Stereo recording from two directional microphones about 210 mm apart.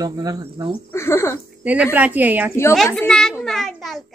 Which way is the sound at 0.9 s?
10° left (ahead or behind).